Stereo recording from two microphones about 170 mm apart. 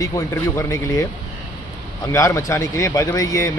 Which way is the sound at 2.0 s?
20° left (ahead or behind).